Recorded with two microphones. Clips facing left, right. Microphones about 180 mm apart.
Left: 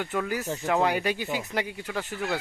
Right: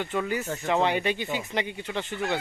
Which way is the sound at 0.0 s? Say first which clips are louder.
Right 1 dB; 5° left (ahead or behind).